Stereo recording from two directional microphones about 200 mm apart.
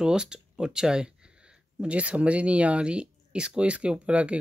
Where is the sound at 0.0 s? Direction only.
5° right (ahead or behind).